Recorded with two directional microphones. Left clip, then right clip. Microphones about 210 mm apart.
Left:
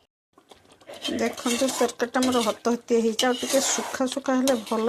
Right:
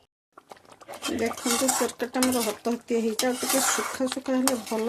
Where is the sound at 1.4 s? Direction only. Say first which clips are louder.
Left 2 dB; 10° left (ahead or behind).